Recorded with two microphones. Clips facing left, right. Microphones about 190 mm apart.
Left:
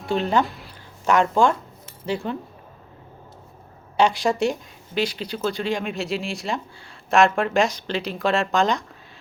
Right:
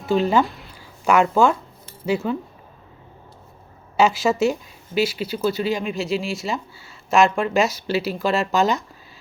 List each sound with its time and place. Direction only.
0.0 s speech: centre (ahead or behind)
3.9 s speech: 5° right (ahead or behind)